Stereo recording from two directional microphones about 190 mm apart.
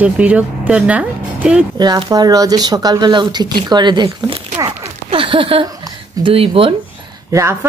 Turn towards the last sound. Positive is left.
turn(degrees=-15)  # may be behind; listen again after turning